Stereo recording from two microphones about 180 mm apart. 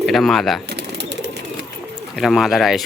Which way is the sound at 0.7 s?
70° right (ahead or behind).